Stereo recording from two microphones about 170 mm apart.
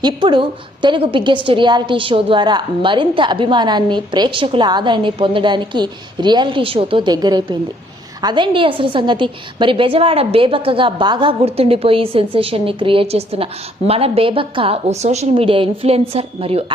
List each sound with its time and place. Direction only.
0.0 s a woman's voice: 30° right (ahead or behind)